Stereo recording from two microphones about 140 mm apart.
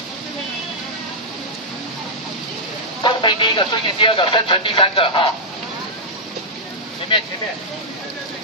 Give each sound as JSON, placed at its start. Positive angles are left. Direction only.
{"t": 3.0, "sound": "a man's voice", "side_deg": 35}
{"t": 7.1, "sound": "a man's voice", "side_deg": 35}